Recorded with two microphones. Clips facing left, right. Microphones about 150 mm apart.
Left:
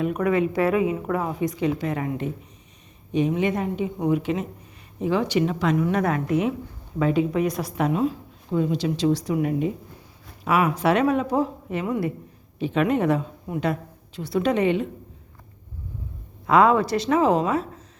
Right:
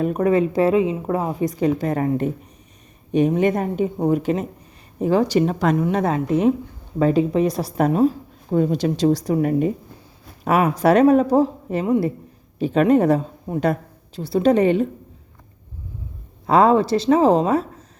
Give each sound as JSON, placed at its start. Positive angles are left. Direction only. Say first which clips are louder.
{"t": 0.0, "sound": "a woman's voice", "louder": "right 4 dB", "side_deg": -35}
{"t": 5.7, "sound": "a woman's voice", "louder": "right 2 dB", "side_deg": -30}
{"t": 16.5, "sound": "a woman's voice", "louder": "right 3 dB", "side_deg": -30}